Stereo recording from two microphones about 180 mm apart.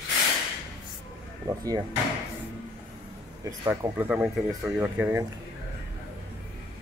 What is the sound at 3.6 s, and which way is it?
Speech, 15° right (ahead or behind).